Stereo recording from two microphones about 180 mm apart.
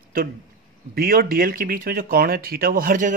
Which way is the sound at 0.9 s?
55° right (ahead or behind).